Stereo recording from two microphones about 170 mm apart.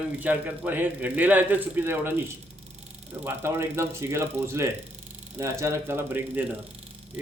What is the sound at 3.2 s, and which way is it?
A man's voice, 15° right (ahead or behind).